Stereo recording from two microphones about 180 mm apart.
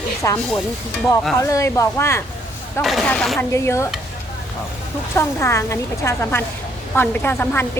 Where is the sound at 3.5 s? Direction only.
15° left (ahead or behind).